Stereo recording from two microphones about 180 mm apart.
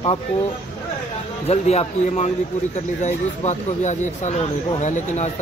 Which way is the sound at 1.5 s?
35° left (ahead or behind).